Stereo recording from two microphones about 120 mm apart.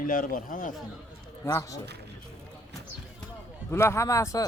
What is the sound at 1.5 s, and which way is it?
Speech, 30° left (ahead or behind).